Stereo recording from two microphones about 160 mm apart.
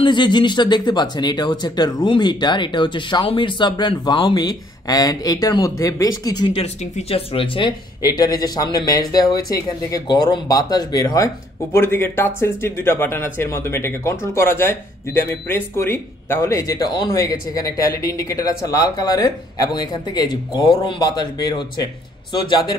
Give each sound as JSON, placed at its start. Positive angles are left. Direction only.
{"t": 0.0, "sound": "speech", "side_deg": 30}
{"t": 6.5, "sound": "speech", "side_deg": 40}